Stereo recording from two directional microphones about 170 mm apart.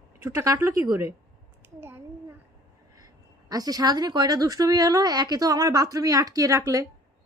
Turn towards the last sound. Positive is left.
turn(degrees=-20)  # may be behind; listen again after turning